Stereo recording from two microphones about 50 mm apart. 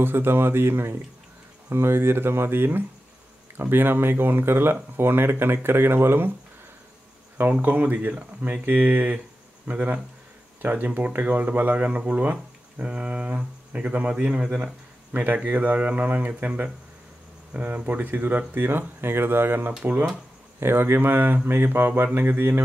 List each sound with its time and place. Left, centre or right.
0.0 s speech: right
7.4 s speech: right
7.8 s speech: right
15.1 s speech: right
19.8 s speech: right
20.6 s speech: right